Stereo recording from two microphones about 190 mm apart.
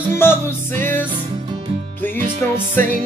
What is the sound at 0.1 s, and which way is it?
Music, 10° left (ahead or behind).